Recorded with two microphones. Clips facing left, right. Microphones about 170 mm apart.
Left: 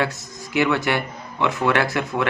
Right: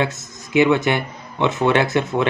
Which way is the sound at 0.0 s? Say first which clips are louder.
Right 2 dB; 20° right (ahead or behind).